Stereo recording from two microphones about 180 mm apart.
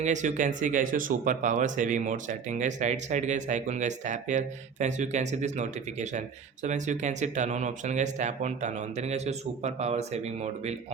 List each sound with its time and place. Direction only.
0.0 s speech: 40° right (ahead or behind)